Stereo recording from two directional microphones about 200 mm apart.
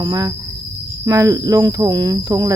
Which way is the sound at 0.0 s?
20° right (ahead or behind).